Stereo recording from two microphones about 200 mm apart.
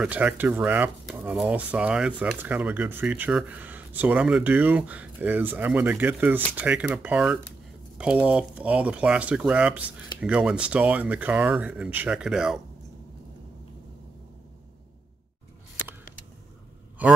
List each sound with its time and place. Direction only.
0.0 s speech: 5° right (ahead or behind)
17.0 s a man's voice: 10° right (ahead or behind)